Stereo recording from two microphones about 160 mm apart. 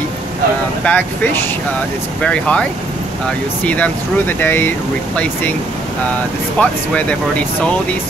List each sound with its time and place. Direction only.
0.8 s speech: 10° left (ahead or behind)
3.6 s speech: 10° left (ahead or behind)
6.6 s speech: 10° left (ahead or behind)